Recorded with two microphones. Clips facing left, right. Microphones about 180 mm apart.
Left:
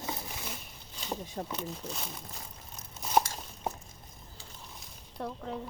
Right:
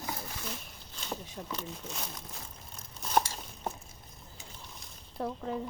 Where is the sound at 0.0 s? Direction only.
25° left (ahead or behind).